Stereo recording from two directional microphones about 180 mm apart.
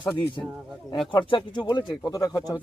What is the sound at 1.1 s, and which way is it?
Speech, 25° left (ahead or behind).